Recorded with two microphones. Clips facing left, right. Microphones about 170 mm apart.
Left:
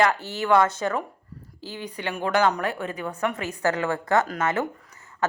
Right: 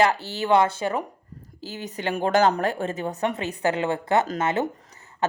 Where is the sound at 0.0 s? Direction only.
35° right (ahead or behind).